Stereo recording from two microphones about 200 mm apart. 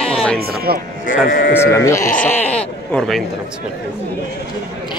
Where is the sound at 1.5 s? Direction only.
15° left (ahead or behind).